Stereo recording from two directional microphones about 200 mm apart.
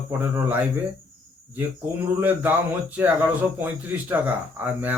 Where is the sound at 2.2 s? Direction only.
10° right (ahead or behind).